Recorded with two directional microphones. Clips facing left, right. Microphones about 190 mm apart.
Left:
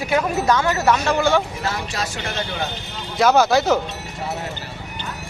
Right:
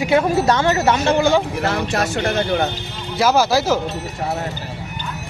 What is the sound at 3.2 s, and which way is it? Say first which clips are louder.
Speech: left 1 dB; centre (ahead or behind).